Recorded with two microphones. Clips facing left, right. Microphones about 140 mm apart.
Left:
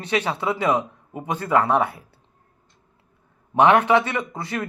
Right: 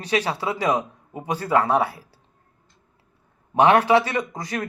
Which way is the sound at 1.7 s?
30° right (ahead or behind).